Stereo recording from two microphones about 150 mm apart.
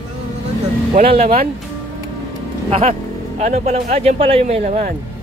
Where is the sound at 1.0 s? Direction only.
45° right (ahead or behind).